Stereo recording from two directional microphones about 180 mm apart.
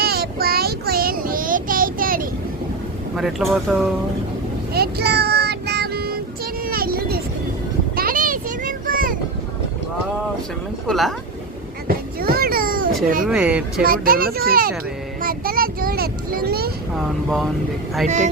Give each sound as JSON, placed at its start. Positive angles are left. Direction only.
{"t": 0.0, "sound": "child singing", "side_deg": -60}
{"t": 3.2, "sound": "speech", "side_deg": 0}
{"t": 4.7, "sound": "child singing", "side_deg": -60}
{"t": 7.9, "sound": "a sound", "side_deg": -50}
{"t": 10.8, "sound": "speech", "side_deg": 0}
{"t": 11.9, "sound": "a sound", "side_deg": -55}
{"t": 13.2, "sound": "speech", "side_deg": -5}
{"t": 13.8, "sound": "a child's voice", "side_deg": -55}
{"t": 15.2, "sound": "vehicle", "side_deg": -55}
{"t": 16.9, "sound": "vehicle", "side_deg": 0}